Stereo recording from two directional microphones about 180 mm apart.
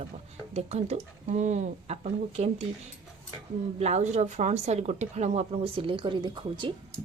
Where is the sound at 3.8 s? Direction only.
40° right (ahead or behind).